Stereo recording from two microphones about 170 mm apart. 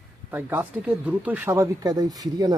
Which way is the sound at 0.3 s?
10° right (ahead or behind).